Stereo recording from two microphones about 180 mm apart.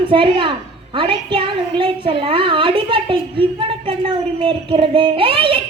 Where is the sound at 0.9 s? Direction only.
30° right (ahead or behind).